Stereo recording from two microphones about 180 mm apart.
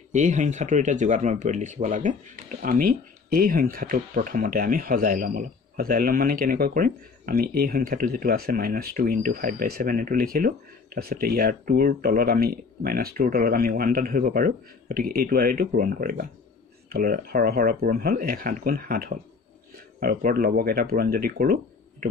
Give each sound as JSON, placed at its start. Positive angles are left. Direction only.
{"t": 0.1, "sound": "speech", "side_deg": -45}